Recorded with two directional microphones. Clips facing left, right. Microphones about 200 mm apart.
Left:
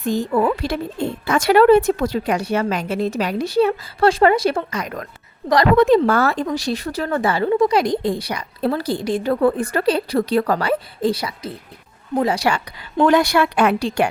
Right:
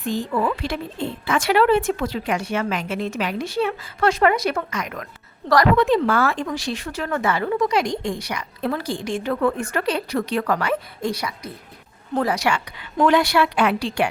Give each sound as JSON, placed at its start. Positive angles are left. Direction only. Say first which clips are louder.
{"t": 0.0, "sound": "a woman's voice", "louder": "left 4 dB", "side_deg": 45}